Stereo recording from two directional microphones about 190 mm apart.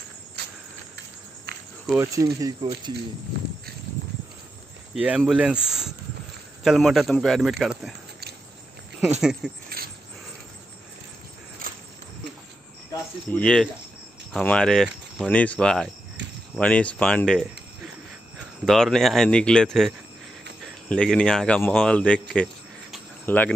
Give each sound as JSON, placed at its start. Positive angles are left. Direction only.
{"t": 0.4, "sound": "cricket", "side_deg": -60}
{"t": 1.9, "sound": "speech", "side_deg": -10}
{"t": 2.2, "sound": "speech", "side_deg": -25}
{"t": 4.9, "sound": "speech", "side_deg": -5}
{"t": 9.2, "sound": "speech", "side_deg": 0}
{"t": 9.8, "sound": "a sound", "side_deg": -50}
{"t": 11.6, "sound": "cricket", "side_deg": -50}
{"t": 12.9, "sound": "cricket", "side_deg": 5}
{"t": 14.3, "sound": "speech", "side_deg": 5}
{"t": 18.7, "sound": "speech", "side_deg": 0}
{"t": 20.9, "sound": "speech", "side_deg": 5}
{"t": 22.3, "sound": "cricket", "side_deg": 5}